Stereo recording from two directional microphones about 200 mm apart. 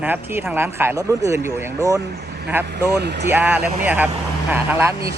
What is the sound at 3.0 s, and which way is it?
Speech, 55° right (ahead or behind).